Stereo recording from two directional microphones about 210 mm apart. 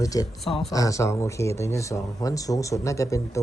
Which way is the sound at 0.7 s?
15° left (ahead or behind).